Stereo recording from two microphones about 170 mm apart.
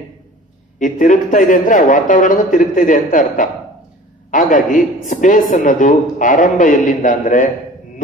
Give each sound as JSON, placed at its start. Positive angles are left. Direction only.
{"t": 0.7, "sound": "a man's voice", "side_deg": 50}